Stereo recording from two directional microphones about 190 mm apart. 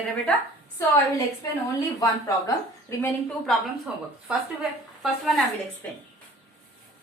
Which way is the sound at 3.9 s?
5° right (ahead or behind).